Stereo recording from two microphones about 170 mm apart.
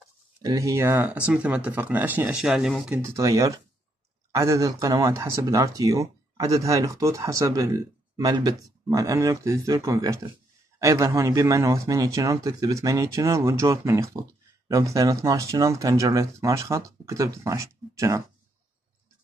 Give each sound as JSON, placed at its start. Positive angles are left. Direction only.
{"t": 0.4, "sound": "speech", "side_deg": -20}
{"t": 3.2, "sound": "speech", "side_deg": -20}